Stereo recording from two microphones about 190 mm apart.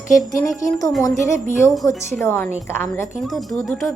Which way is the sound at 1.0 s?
15° left (ahead or behind).